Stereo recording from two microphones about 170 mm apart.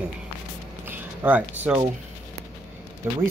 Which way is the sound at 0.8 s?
10° right (ahead or behind).